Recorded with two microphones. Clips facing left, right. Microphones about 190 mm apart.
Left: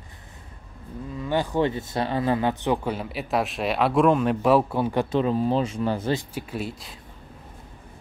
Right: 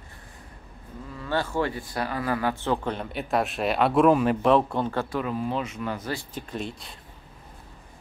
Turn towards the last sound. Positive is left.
turn(degrees=5)  # may be behind; listen again after turning